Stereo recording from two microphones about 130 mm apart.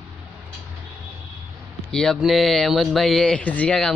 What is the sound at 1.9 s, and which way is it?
Speech, 5° left (ahead or behind).